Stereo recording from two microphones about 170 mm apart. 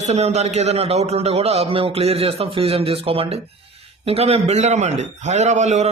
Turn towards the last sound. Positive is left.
turn(degrees=-45)  # may be behind; listen again after turning